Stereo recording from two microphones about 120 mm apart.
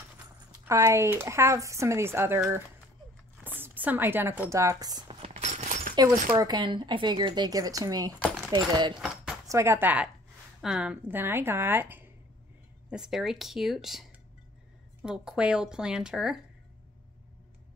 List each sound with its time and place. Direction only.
0.7 s speech: 25° right (ahead or behind)
3.4 s speech: 15° right (ahead or behind); by 5.0 s 30° right (ahead or behind)
5.3 s a sound: 70° right (ahead or behind)
5.9 s speech: 30° right (ahead or behind)
9.0 s a sound: 5° right (ahead or behind)
9.5 s a woman's voice: 20° right (ahead or behind)
12.9 s speech: 5° right (ahead or behind)
15.0 s speech: 5° right (ahead or behind)